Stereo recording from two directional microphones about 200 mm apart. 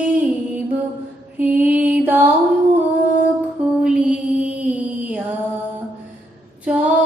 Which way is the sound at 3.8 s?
5° right (ahead or behind).